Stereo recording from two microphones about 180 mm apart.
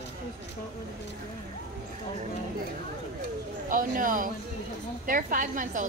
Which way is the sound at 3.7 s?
50° right (ahead or behind).